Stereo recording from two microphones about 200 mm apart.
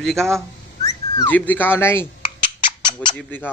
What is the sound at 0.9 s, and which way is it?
Speech, 10° left (ahead or behind).